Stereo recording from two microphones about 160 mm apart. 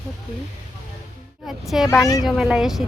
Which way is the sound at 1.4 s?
Centre (ahead or behind).